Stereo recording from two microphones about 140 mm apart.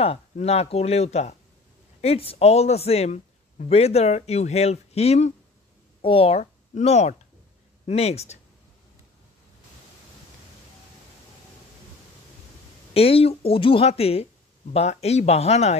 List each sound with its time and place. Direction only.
0.0 s speech: 45° left (ahead or behind)
12.9 s speech: 45° left (ahead or behind)